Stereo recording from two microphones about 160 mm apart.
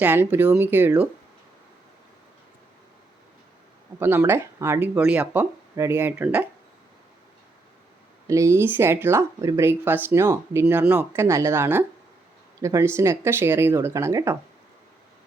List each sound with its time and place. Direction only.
0.0 s speech: 10° right (ahead or behind)
4.0 s speech: 15° right (ahead or behind)
8.3 s speech: 20° right (ahead or behind)